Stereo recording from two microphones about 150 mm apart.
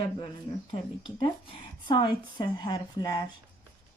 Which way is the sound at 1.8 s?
30° left (ahead or behind).